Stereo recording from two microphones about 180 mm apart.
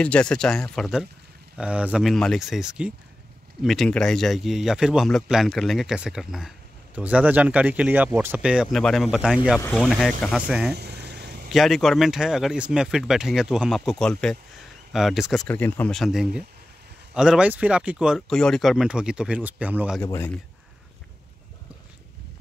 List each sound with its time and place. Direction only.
0.0 s speech: 5° left (ahead or behind)
10.7 s vehicle: 65° right (ahead or behind)
11.4 s speech: centre (ahead or behind)
20.0 s speech: 15° left (ahead or behind)